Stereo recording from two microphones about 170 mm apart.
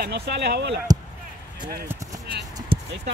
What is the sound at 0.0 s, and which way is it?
Speech, 80° right.